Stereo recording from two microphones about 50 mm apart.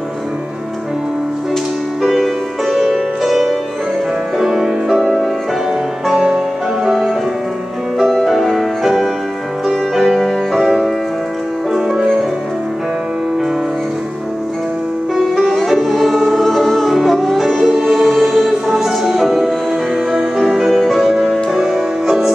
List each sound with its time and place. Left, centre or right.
2.0 s music: centre
6.1 s music: centre
8.3 s music: centre
10.1 s music: centre
15.1 s music: centre
20.7 s music: centre
21.0 s music: centre